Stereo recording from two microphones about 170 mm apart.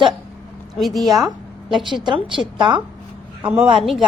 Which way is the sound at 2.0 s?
30° right (ahead or behind).